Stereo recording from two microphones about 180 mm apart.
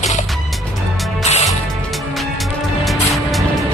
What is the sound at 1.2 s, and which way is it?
Music, 40° left (ahead or behind).